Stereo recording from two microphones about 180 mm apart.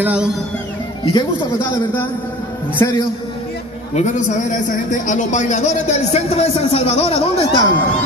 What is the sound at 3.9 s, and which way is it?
A man's voice, 40° left (ahead or behind).